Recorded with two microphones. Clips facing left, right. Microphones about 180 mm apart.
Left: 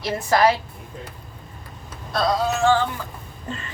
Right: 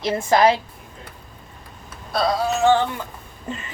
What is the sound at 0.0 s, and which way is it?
Speech, 20° right (ahead or behind).